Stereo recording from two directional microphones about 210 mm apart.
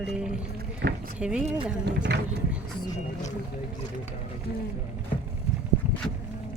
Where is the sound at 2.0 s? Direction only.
55° right (ahead or behind).